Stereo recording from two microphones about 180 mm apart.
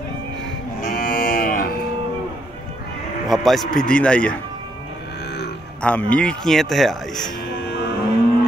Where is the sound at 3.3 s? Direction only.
Centre (ahead or behind).